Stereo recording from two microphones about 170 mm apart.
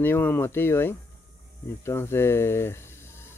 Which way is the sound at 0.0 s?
10° left (ahead or behind).